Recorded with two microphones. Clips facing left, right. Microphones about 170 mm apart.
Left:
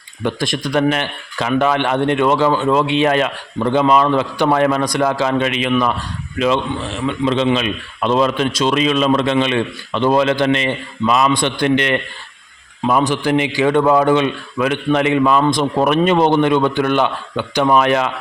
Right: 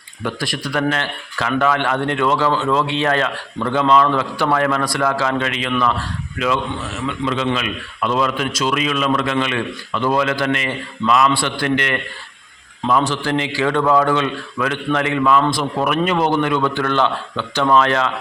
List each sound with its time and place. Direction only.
0.3 s a man's voice: 20° left (ahead or behind)